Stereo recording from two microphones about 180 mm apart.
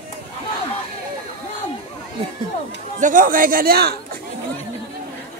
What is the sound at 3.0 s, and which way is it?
Speech, 45° right (ahead or behind).